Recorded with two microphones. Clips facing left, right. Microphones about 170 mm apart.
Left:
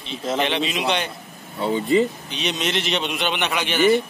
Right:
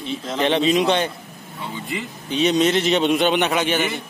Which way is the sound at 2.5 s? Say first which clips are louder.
Right 6 dB; 45° right (ahead or behind).